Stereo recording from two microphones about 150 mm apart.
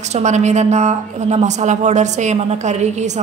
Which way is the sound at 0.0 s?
50° right (ahead or behind).